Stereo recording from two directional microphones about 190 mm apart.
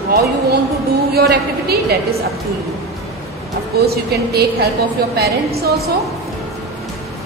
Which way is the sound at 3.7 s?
55° right (ahead or behind).